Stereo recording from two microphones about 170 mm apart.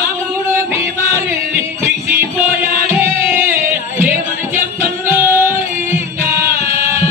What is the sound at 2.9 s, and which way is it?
Music, 15° right (ahead or behind).